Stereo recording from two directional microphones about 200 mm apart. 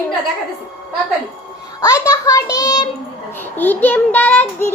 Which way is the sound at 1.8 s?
15° left (ahead or behind).